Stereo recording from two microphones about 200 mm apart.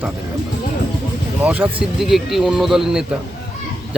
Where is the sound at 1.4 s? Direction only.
10° right (ahead or behind).